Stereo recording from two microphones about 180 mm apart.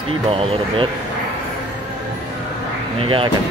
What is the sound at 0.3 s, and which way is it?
Speech, 30° right (ahead or behind).